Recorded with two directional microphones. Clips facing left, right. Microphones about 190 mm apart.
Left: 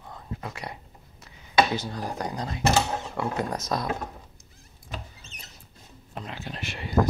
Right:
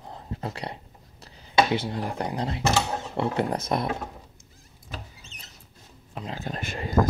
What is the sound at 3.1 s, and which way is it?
Speech, 25° right (ahead or behind).